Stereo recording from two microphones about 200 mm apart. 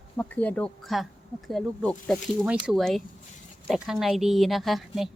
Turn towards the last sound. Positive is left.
turn(degrees=0)  # may be behind; listen again after turning